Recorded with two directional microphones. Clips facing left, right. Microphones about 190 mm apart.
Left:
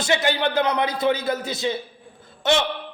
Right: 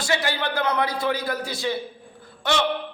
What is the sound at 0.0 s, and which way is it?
A man's voice, 20° left (ahead or behind).